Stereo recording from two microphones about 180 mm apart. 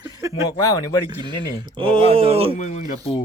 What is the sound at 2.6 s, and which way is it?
Speech, 40° left (ahead or behind).